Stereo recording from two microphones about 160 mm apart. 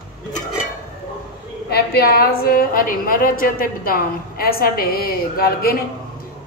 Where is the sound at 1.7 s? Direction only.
75° left (ahead or behind).